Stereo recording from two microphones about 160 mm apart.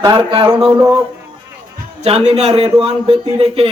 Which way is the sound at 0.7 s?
5° right (ahead or behind).